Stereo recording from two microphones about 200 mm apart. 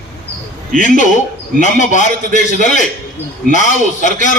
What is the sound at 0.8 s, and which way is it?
A man's voice, 40° left (ahead or behind).